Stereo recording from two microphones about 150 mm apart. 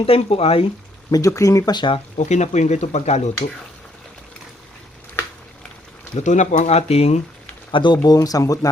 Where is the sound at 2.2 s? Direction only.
50° left (ahead or behind).